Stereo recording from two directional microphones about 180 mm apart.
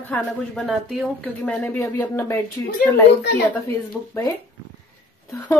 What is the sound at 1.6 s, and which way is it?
Speech, 10° left (ahead or behind).